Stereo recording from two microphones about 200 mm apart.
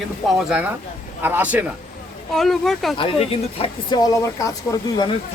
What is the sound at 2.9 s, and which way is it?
Speech, 30° left (ahead or behind).